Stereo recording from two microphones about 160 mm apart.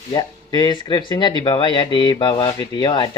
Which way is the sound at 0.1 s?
25° left (ahead or behind).